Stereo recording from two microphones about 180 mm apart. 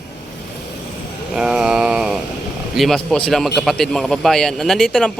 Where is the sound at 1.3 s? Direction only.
5° right (ahead or behind).